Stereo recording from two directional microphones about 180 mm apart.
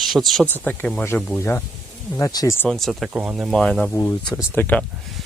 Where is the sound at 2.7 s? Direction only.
Centre (ahead or behind).